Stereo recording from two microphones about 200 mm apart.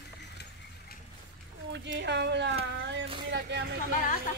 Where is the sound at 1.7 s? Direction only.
60° right (ahead or behind).